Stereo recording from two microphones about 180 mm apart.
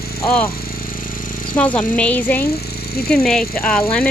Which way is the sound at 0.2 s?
10° left (ahead or behind).